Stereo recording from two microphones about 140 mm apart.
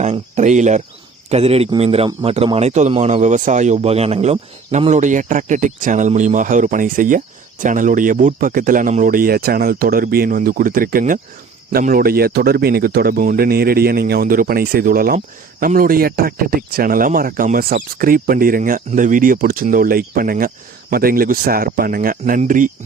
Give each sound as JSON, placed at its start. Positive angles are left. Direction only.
{"t": 0.0, "sound": "speech", "side_deg": -55}
{"t": 1.3, "sound": "speech", "side_deg": -45}
{"t": 22.4, "sound": "speech", "side_deg": -65}